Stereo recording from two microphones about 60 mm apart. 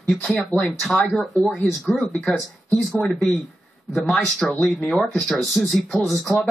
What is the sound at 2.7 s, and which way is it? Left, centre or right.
Speech, centre.